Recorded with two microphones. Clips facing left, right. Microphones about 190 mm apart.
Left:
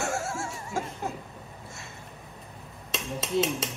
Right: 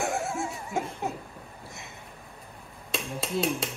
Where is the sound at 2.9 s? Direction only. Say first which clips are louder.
Left 3 dB; centre (ahead or behind).